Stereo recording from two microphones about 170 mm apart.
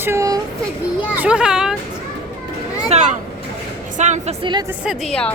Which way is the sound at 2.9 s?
40° right (ahead or behind).